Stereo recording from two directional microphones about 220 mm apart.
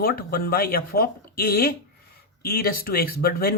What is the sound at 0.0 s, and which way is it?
Speech, 40° left (ahead or behind).